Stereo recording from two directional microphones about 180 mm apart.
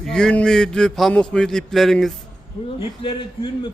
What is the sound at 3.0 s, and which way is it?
Speech, 25° left (ahead or behind).